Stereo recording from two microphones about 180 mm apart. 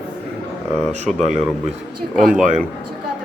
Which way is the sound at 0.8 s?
5° left (ahead or behind).